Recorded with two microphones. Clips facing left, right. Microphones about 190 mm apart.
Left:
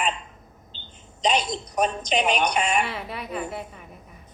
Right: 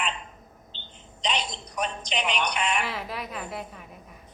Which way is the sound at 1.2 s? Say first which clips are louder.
Left 7 dB; 45° left (ahead or behind).